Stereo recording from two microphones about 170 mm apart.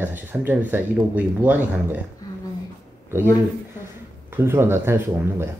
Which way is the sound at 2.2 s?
20° left (ahead or behind).